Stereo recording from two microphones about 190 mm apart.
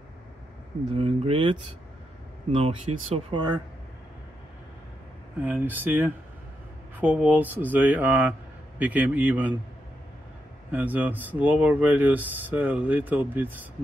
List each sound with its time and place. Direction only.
0.9 s speech: 30° right (ahead or behind)
2.5 s speech: 30° right (ahead or behind)
5.4 s speech: 10° right (ahead or behind)
10.7 s speech: 10° right (ahead or behind)